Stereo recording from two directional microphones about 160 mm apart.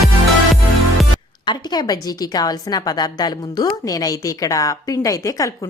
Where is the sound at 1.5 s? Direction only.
25° left (ahead or behind).